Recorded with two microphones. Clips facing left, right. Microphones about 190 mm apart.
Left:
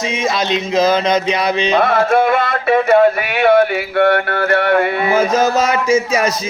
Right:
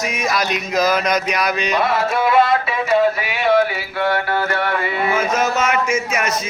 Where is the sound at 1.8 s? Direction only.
55° left (ahead or behind).